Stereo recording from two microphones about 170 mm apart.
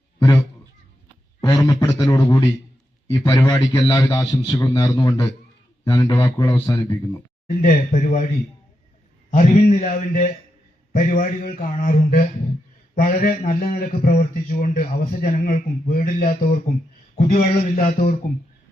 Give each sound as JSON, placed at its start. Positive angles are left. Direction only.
{"t": 0.2, "sound": "a sound", "side_deg": 15}
{"t": 1.4, "sound": "a man's voice", "side_deg": 25}
{"t": 7.6, "sound": "speech", "side_deg": 50}
{"t": 9.3, "sound": "a man's voice", "side_deg": 50}